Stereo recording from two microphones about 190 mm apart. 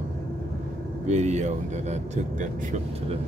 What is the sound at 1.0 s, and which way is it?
Speech, 35° right (ahead or behind).